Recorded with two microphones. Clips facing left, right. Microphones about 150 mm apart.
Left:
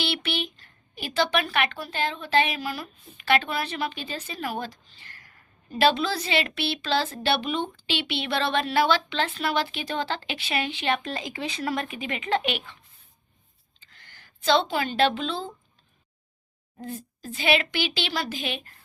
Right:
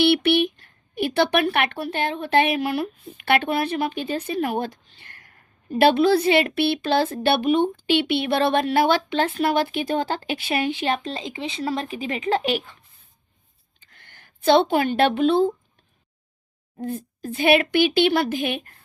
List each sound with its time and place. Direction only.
0.0 s speech: 60° right (ahead or behind); by 12.7 s 40° right (ahead or behind)
13.7 s speech: 55° right (ahead or behind)
17.2 s speech: 55° right (ahead or behind)